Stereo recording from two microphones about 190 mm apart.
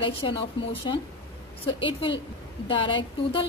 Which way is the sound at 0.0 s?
25° left (ahead or behind).